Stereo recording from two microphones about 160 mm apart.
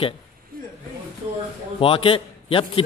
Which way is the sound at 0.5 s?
65° right (ahead or behind).